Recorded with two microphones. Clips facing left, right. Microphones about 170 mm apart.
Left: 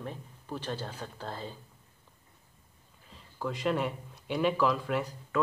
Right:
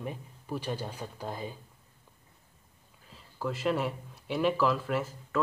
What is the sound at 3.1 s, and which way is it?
Speech, centre (ahead or behind).